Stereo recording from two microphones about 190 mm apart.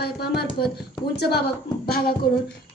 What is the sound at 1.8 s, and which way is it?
Beatboxing, 55° left (ahead or behind).